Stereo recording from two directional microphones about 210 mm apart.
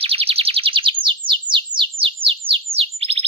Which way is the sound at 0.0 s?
25° right (ahead or behind).